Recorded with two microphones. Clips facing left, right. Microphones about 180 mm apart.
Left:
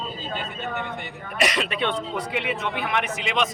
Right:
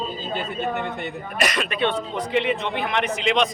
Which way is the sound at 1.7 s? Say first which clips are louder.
Right 3 dB; 15° left (ahead or behind).